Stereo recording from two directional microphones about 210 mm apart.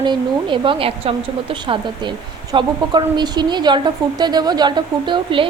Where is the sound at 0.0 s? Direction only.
20° right (ahead or behind).